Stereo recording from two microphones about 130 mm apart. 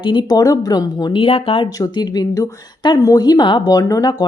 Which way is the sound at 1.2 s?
45° left (ahead or behind).